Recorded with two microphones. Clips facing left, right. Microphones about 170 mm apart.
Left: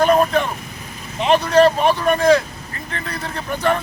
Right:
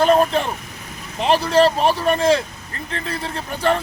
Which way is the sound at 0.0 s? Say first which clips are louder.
Even; 30° right (ahead or behind).